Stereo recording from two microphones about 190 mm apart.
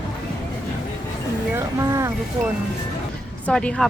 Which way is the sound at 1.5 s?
15° right (ahead or behind).